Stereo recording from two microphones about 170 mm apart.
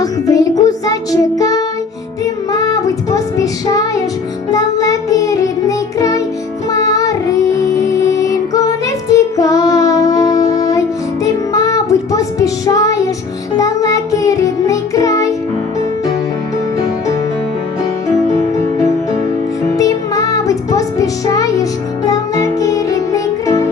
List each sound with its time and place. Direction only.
0.0 s music: 20° left (ahead or behind)
2.2 s child singing: 20° left (ahead or behind)
4.5 s music: 20° left (ahead or behind)
6.7 s child singing: 20° left (ahead or behind)
11.5 s music: 20° left (ahead or behind)
19.8 s music: 20° left (ahead or behind)